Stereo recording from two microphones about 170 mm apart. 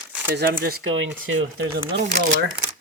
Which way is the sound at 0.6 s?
65° right (ahead or behind).